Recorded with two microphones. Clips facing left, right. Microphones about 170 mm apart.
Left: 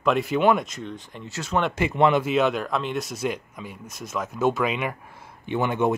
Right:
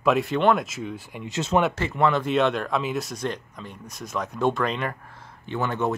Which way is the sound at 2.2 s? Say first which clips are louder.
Even; centre (ahead or behind).